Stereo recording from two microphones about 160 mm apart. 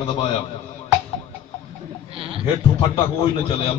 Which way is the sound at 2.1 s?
35° right (ahead or behind).